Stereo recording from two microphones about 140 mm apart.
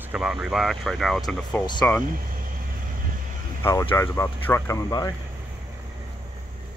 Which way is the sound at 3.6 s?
25° left (ahead or behind).